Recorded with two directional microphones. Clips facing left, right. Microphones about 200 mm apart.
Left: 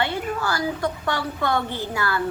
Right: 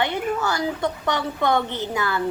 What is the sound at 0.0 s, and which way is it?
A woman's voice, 20° right (ahead or behind).